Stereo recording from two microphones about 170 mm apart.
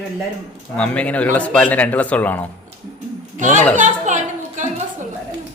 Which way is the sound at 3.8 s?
45° right (ahead or behind).